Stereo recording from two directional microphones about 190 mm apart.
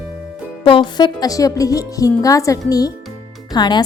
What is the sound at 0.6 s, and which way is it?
Speech, 25° left (ahead or behind).